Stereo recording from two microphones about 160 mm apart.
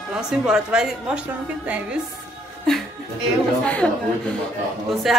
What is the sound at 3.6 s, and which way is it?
Speech, 5° left (ahead or behind).